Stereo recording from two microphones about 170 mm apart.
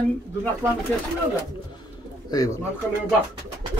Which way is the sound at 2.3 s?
20° left (ahead or behind).